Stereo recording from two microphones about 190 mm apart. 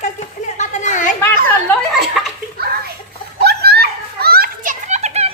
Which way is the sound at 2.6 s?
55° right (ahead or behind).